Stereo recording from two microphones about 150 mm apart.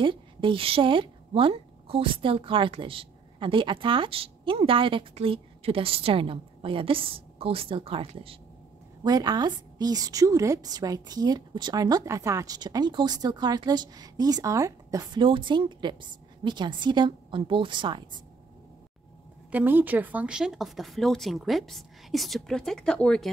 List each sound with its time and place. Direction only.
0.0 s a woman's voice: 35° right (ahead or behind)
9.0 s a woman's voice: 25° right (ahead or behind)
19.5 s speech: 10° right (ahead or behind); by 23.3 s 5° left (ahead or behind)